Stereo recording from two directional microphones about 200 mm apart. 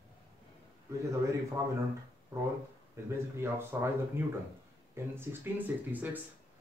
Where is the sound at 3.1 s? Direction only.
10° right (ahead or behind).